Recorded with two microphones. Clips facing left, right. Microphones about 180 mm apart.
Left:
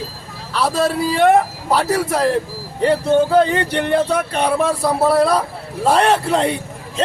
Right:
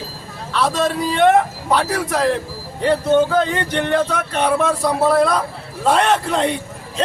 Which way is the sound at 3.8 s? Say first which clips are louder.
Left 1 dB; 10° left (ahead or behind).